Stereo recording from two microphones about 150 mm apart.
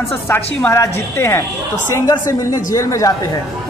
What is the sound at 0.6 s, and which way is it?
A woman's voice, 15° left (ahead or behind).